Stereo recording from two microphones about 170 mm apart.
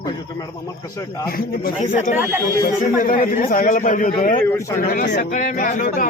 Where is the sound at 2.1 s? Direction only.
15° right (ahead or behind).